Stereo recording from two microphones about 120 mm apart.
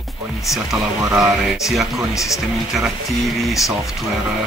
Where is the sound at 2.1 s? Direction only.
25° left (ahead or behind).